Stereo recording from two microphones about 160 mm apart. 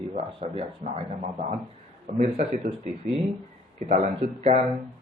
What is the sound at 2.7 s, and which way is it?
Speech, 60° right (ahead or behind).